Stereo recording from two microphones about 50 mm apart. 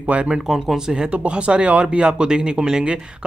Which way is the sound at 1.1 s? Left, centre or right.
Right.